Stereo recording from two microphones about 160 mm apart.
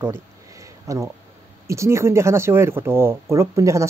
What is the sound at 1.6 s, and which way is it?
Speech, 20° right (ahead or behind).